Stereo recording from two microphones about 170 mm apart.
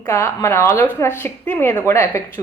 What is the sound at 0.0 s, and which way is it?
Speech, 15° left (ahead or behind).